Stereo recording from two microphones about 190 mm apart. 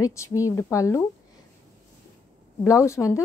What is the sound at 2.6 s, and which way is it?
Speech, 15° left (ahead or behind).